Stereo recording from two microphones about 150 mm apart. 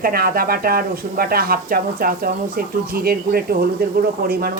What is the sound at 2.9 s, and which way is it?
Speech, 90° right.